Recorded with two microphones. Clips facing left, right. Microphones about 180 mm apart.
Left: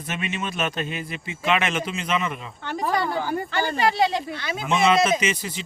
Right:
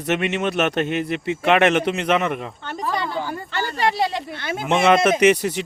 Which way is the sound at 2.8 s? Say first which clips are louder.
Left 1 dB; 45° left (ahead or behind).